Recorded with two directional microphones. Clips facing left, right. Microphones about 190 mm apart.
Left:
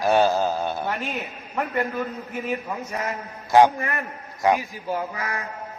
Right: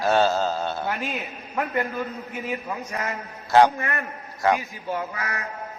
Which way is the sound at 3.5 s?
15° left (ahead or behind).